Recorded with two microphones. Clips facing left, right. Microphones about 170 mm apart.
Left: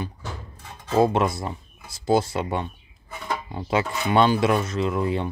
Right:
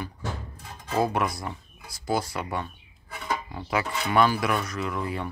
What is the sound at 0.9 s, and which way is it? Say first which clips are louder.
Speech: left 5 dB; 25° left (ahead or behind).